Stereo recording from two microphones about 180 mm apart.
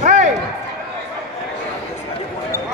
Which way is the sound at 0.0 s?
40° right (ahead or behind).